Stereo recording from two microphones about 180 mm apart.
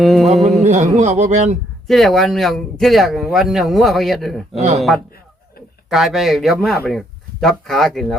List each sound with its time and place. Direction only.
0.0 s speech: centre (ahead or behind)
0.6 s speech: 40° right (ahead or behind)
1.9 s speech: centre (ahead or behind)
5.9 s speech: centre (ahead or behind)